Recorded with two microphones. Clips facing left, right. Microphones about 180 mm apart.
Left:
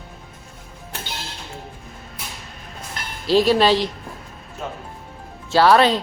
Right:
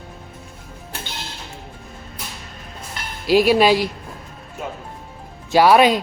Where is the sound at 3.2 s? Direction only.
10° right (ahead or behind).